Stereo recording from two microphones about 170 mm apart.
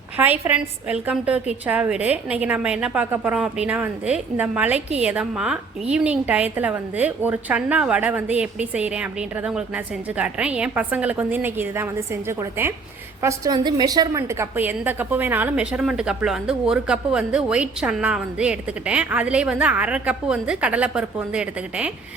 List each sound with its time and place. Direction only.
0.2 s a woman's voice: 10° right (ahead or behind)